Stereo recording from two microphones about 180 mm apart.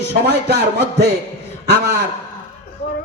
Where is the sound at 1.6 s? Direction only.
65° right (ahead or behind).